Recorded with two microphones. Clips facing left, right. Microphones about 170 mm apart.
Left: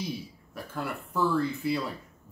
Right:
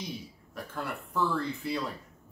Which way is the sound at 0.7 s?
5° left (ahead or behind).